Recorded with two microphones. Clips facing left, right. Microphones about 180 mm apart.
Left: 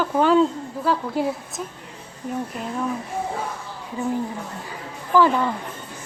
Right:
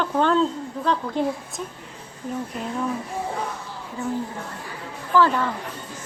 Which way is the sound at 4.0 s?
15° left (ahead or behind).